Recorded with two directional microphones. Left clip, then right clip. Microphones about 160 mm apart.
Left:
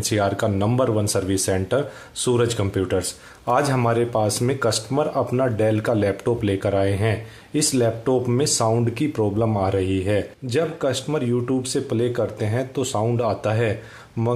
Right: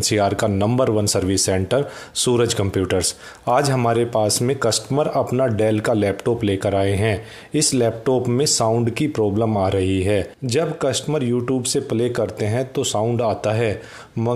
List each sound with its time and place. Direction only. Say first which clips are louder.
0.0 s speech: right 3 dB; 35° right (ahead or behind)